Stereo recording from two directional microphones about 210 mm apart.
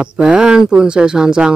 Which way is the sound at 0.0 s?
5° right (ahead or behind).